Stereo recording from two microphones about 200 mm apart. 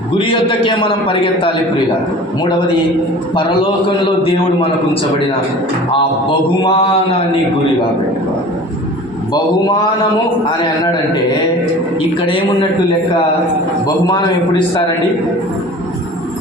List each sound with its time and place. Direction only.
0.3 s a man's voice: 25° left (ahead or behind)
3.8 s a man's voice: 30° left (ahead or behind)
6.6 s a man's voice: 25° left (ahead or behind)
12.2 s a man's voice: 25° left (ahead or behind)